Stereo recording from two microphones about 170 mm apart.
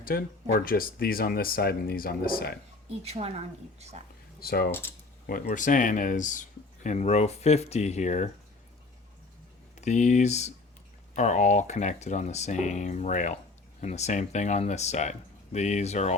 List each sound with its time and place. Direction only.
0.0 s speech: 60° left (ahead or behind)
3.0 s a woman's voice: 35° right (ahead or behind)
4.4 s speech: 65° left (ahead or behind)
4.7 s speech: 15° left (ahead or behind)
5.2 s speech: 55° left (ahead or behind)
9.8 s speech: 45° left (ahead or behind)